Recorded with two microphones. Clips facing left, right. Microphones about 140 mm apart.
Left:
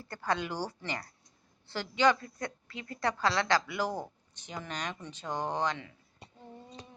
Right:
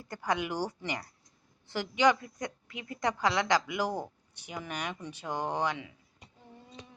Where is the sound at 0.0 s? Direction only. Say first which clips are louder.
Right 1 dB; 15° right (ahead or behind).